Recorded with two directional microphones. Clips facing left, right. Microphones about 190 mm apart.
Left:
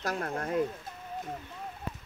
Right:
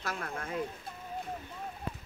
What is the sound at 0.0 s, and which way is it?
Speech, 40° left (ahead or behind).